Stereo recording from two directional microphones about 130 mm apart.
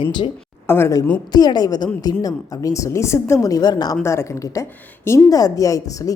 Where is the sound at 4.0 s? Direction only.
20° left (ahead or behind).